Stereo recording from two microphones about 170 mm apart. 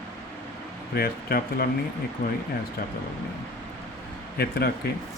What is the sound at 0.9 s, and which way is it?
Speech, 60° left (ahead or behind).